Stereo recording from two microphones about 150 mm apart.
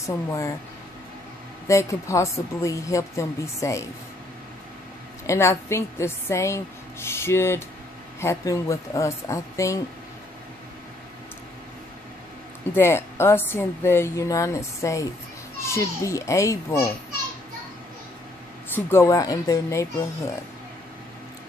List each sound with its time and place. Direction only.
0.3 s a woman's voice: 20° left (ahead or behind)
1.7 s a woman's voice: 20° left (ahead or behind)
5.2 s a woman's voice: 20° left (ahead or behind)
12.7 s a woman's voice: 15° left (ahead or behind)
18.9 s a woman's voice: 20° left (ahead or behind)